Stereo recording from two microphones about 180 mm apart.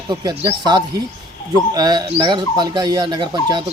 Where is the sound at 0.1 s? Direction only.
25° right (ahead or behind).